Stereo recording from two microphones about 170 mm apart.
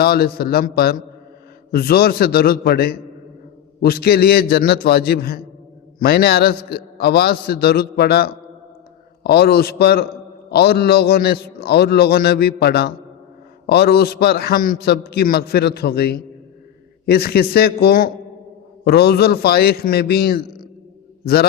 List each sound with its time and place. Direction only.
0.0 s a man's voice: 65° left (ahead or behind)